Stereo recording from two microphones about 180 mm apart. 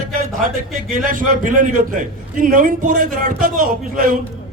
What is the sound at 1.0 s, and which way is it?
A man's voice, 50° right (ahead or behind).